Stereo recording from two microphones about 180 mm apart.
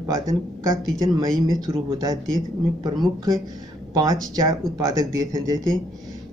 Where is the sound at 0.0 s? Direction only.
20° right (ahead or behind).